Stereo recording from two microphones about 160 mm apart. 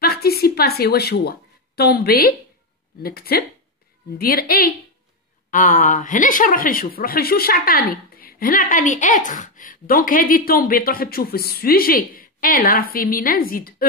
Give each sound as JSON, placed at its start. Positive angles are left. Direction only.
{"t": 0.0, "sound": "a woman's voice", "side_deg": 75}
{"t": 5.5, "sound": "a woman's voice", "side_deg": 55}